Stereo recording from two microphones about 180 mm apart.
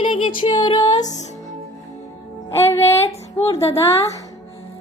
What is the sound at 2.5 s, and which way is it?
Speech, 15° left (ahead or behind).